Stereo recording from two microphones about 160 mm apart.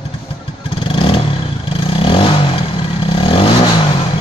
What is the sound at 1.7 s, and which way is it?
Vehicle, 35° left (ahead or behind).